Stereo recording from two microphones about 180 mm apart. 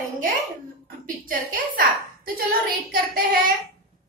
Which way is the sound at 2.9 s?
55° right (ahead or behind).